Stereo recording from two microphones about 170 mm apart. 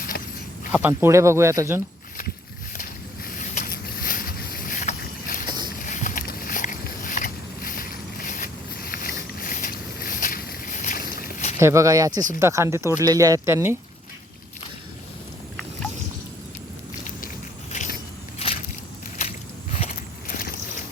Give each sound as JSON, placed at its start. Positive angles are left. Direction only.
{"t": 0.7, "sound": "speech", "side_deg": -10}
{"t": 3.2, "sound": "boat", "side_deg": 55}
{"t": 5.5, "sound": "walk", "side_deg": -25}
{"t": 5.8, "sound": "a sound", "side_deg": 50}
{"t": 9.4, "sound": "boat", "side_deg": 50}
{"t": 11.6, "sound": "speech", "side_deg": -15}
{"t": 18.4, "sound": "a sound", "side_deg": 35}
{"t": 20.2, "sound": "vehicle", "side_deg": 60}